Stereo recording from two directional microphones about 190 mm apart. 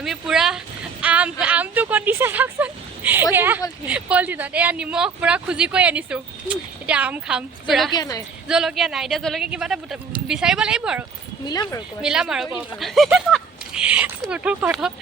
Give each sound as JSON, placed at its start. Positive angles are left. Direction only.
{"t": 0.0, "sound": "speech", "side_deg": 0}
{"t": 1.0, "sound": "a sound", "side_deg": -5}
{"t": 3.3, "sound": "speech", "side_deg": -10}
{"t": 7.9, "sound": "speech", "side_deg": 20}
{"t": 8.4, "sound": "speech", "side_deg": -5}
{"t": 11.4, "sound": "speech", "side_deg": 20}
{"t": 12.0, "sound": "speech", "side_deg": -5}